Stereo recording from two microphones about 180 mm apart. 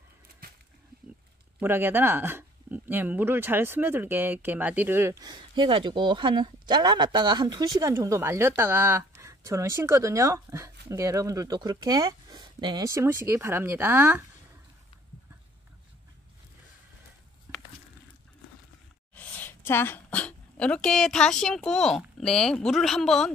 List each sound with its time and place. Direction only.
0.4 s a sound: 55° right (ahead or behind)
1.6 s speech: 10° right (ahead or behind)
19.1 s speech: 10° left (ahead or behind)